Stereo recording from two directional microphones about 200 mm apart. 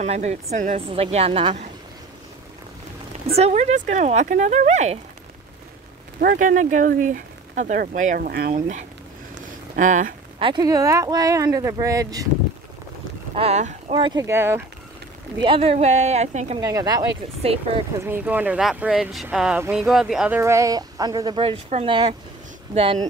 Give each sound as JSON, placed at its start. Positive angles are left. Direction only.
{"t": 0.0, "sound": "a woman's voice", "side_deg": -35}
{"t": 3.3, "sound": "speech", "side_deg": -30}
{"t": 6.1, "sound": "speech", "side_deg": -40}
{"t": 10.4, "sound": "speech", "side_deg": -20}
{"t": 13.3, "sound": "speech", "side_deg": -30}
{"t": 14.2, "sound": "speech", "side_deg": -15}
{"t": 15.4, "sound": "speech", "side_deg": -30}
{"t": 16.6, "sound": "a woman's voice", "side_deg": -20}
{"t": 17.4, "sound": "a woman's voice", "side_deg": -30}
{"t": 17.9, "sound": "speech", "side_deg": -10}